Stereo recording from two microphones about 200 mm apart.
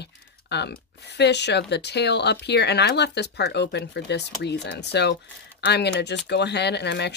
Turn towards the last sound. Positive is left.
turn(degrees=60)  # may be behind; listen again after turning